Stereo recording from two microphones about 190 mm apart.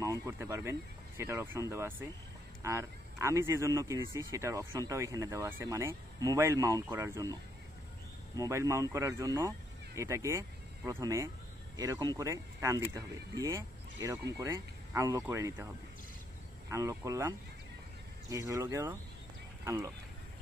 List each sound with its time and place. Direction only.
0.0 s speech: 15° right (ahead or behind)
8.4 s speech: 15° right (ahead or behind)
16.7 s speech: 15° right (ahead or behind)